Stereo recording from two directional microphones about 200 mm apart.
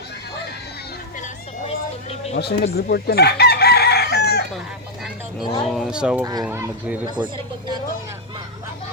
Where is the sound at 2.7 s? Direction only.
50° left (ahead or behind).